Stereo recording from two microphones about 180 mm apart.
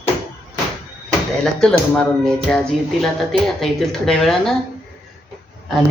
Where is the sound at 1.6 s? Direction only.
5° left (ahead or behind).